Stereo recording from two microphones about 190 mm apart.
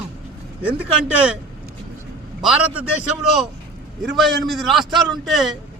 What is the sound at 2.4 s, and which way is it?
Speech, 5° right (ahead or behind).